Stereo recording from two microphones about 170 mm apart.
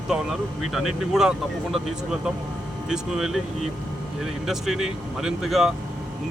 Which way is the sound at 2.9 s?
Centre (ahead or behind).